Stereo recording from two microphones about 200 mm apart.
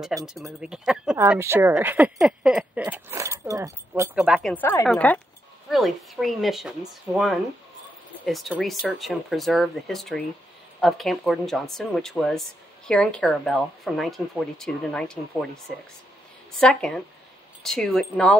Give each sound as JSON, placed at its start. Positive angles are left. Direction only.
{"t": 0.3, "sound": "speech", "side_deg": 0}